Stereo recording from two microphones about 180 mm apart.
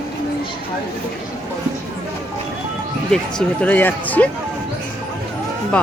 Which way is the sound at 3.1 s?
5° left (ahead or behind).